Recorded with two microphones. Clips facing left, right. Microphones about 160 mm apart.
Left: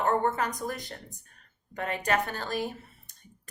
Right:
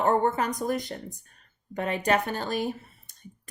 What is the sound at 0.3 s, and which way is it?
Speech, 20° right (ahead or behind).